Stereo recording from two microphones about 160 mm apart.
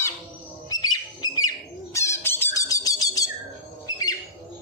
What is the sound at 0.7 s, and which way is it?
Bird, 25° left (ahead or behind).